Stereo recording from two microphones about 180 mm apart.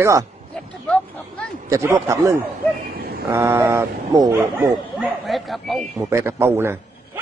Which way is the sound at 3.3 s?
15° right (ahead or behind).